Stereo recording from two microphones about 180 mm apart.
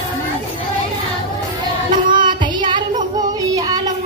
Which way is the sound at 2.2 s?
25° right (ahead or behind).